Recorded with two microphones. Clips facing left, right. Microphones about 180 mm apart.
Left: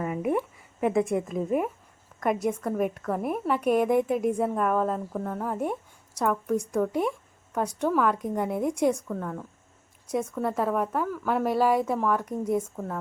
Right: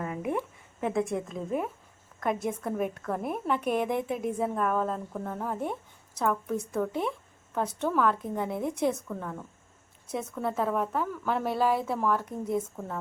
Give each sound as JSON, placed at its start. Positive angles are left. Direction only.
{"t": 0.0, "sound": "a woman's voice", "side_deg": 5}
{"t": 12.2, "sound": "a woman's voice", "side_deg": 10}